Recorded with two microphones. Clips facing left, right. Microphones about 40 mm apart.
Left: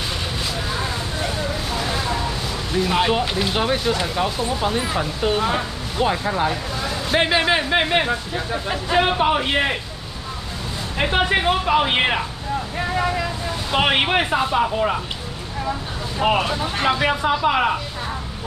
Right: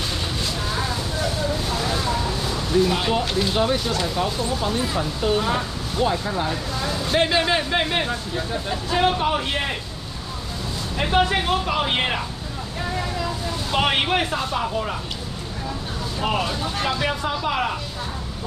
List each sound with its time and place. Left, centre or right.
2.7 s speech: centre
11.0 s speech: left
13.7 s speech: centre
16.2 s speech: left